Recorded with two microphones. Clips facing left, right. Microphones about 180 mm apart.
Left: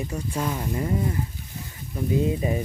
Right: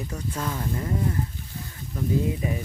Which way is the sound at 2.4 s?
30° left (ahead or behind).